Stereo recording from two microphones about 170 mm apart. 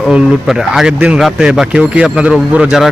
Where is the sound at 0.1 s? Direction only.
5° right (ahead or behind).